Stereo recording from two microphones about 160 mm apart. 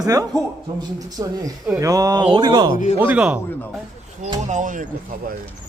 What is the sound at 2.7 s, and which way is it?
Speech, 50° left (ahead or behind).